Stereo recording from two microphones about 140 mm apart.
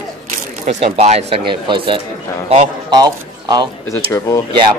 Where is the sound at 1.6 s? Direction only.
35° right (ahead or behind).